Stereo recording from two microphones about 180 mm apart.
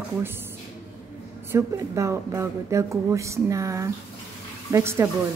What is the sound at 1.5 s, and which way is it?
Speech, 15° right (ahead or behind).